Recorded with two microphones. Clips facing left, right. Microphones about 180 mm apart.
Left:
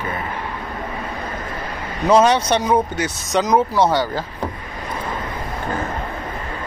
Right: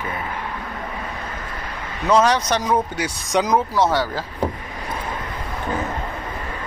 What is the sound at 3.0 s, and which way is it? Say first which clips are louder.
Speech: left 1 dB; 10° right (ahead or behind).